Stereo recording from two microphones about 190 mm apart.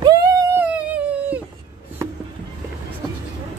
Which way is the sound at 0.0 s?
20° right (ahead or behind).